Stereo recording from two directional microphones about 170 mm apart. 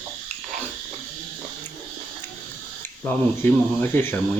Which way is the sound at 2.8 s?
15° left (ahead or behind).